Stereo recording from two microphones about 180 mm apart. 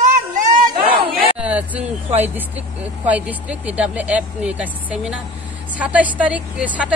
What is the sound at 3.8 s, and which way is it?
Speech, 5° right (ahead or behind).